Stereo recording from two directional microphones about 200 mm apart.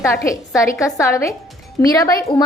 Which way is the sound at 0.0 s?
15° left (ahead or behind).